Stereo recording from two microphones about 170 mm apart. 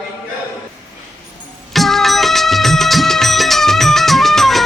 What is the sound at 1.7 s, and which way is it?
Music, centre (ahead or behind).